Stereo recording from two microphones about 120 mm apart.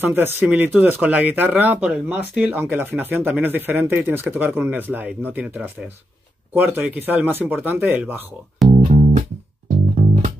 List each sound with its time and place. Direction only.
0.0 s speech: 15° right (ahead or behind)
8.6 s music: 60° right (ahead or behind)
9.9 s music: 90° right